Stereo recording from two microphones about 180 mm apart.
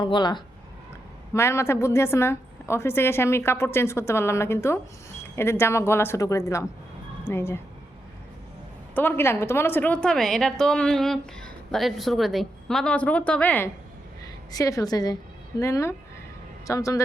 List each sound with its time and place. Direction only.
0.0 s a woman's voice: 25° left (ahead or behind)
9.0 s a woman's voice: 10° left (ahead or behind)
14.5 s a woman's voice: 20° left (ahead or behind)